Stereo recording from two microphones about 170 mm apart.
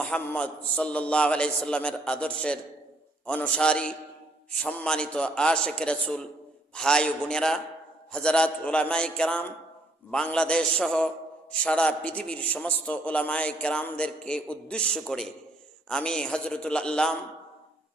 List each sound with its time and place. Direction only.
0.0 s a man's voice: 10° left (ahead or behind)